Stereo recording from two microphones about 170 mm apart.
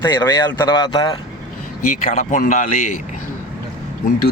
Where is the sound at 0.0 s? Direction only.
25° left (ahead or behind).